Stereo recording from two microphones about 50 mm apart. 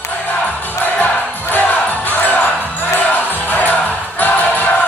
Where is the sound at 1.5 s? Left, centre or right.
Left.